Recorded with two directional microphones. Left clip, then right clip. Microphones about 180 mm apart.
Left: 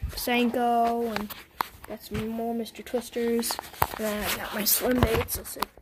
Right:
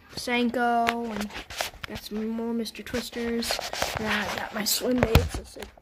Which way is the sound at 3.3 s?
10° left (ahead or behind).